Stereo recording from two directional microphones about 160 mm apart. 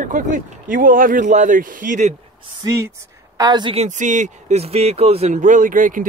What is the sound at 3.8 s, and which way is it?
Speech, 50° right (ahead or behind).